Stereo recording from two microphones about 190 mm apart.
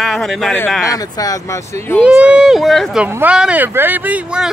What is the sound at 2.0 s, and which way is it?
Speech, 5° right (ahead or behind).